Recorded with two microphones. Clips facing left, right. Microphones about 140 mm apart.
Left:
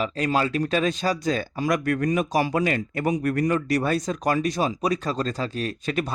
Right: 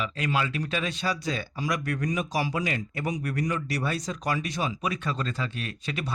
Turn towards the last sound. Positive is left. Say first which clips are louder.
# left 7 dB
turn(degrees=45)  # may be behind; listen again after turning